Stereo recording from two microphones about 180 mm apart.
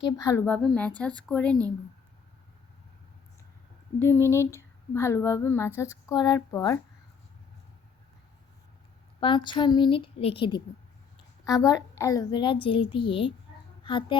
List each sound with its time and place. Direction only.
0.0 s speech: 20° left (ahead or behind)
4.0 s speech: 15° left (ahead or behind)
9.2 s a woman's voice: 25° left (ahead or behind)